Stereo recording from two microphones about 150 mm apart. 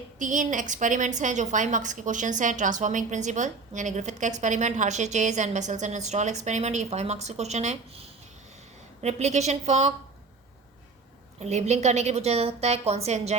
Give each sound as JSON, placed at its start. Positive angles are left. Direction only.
{"t": 0.2, "sound": "a woman's voice", "side_deg": -60}
{"t": 11.3, "sound": "a woman's voice", "side_deg": -45}